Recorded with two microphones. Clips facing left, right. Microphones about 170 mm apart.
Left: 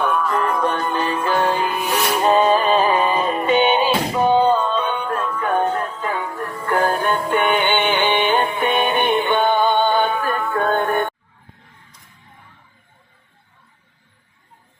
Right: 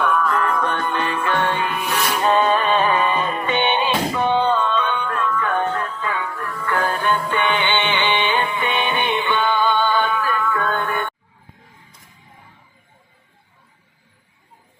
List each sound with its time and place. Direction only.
0.2 s music: 15° left (ahead or behind)
0.6 s music: 35° left (ahead or behind); by 11.1 s 50° left (ahead or behind)